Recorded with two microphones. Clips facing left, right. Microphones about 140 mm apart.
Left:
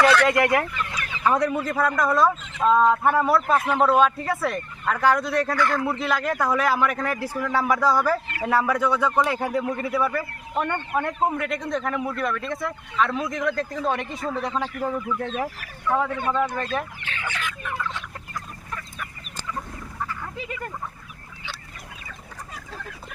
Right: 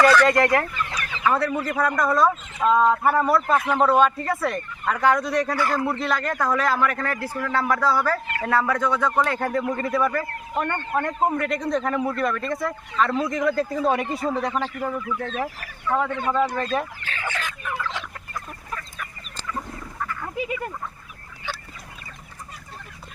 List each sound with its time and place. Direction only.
0.3 s chicken: 10° left (ahead or behind)
1.2 s a man's voice: 20° left (ahead or behind)
1.6 s a man's voice: 5° right (ahead or behind)
14.6 s a man's voice: 15° left (ahead or behind)
16.2 s speech: 10° right (ahead or behind)
17.0 s fowl: 40° right (ahead or behind)
20.2 s speech: 10° right (ahead or behind)